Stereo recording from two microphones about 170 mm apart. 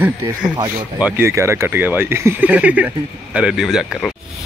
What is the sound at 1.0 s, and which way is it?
Speech, 15° right (ahead or behind).